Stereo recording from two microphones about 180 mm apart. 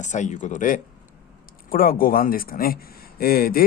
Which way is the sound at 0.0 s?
40° left (ahead or behind).